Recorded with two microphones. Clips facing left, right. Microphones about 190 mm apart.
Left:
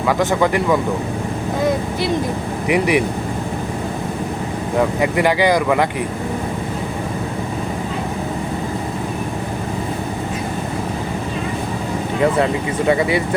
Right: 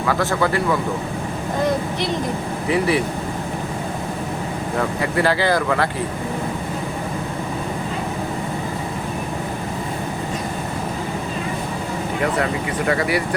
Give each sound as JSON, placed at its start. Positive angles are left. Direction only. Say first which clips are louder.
{"t": 0.1, "sound": "speech", "louder": "left 3 dB", "side_deg": 20}
{"t": 2.6, "sound": "speech", "louder": "left 3 dB", "side_deg": 15}
{"t": 4.8, "sound": "speech", "louder": "left 4 dB", "side_deg": 15}
{"t": 12.9, "sound": "speech", "louder": "left 4 dB", "side_deg": 20}